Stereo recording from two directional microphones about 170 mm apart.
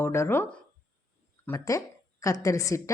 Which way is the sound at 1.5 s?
20° left (ahead or behind).